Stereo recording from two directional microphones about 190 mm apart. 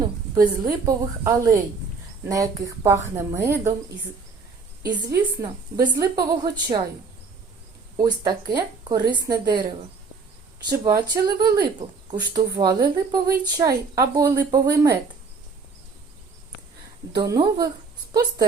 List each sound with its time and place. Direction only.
0.6 s a woman's voice: 15° right (ahead or behind)
4.8 s speech: 20° right (ahead or behind)
7.9 s speech: 20° right (ahead or behind)
10.7 s speech: 20° right (ahead or behind)
17.2 s speech: 20° right (ahead or behind)